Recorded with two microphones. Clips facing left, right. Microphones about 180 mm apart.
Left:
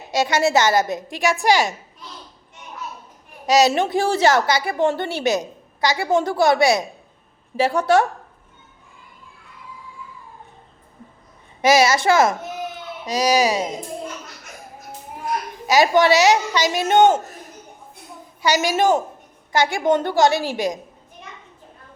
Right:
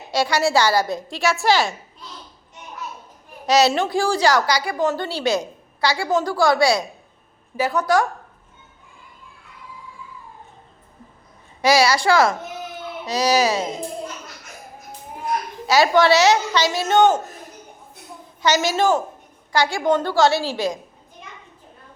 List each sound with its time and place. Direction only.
0.1 s a woman's voice: 20° left (ahead or behind)
3.4 s a woman's voice: 15° left (ahead or behind)
11.6 s a woman's voice: 20° left (ahead or behind)
15.6 s a woman's voice: 15° left (ahead or behind)
18.4 s a woman's voice: 15° left (ahead or behind)